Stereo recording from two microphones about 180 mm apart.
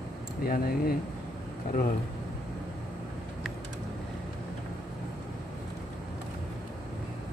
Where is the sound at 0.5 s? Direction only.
55° left (ahead or behind).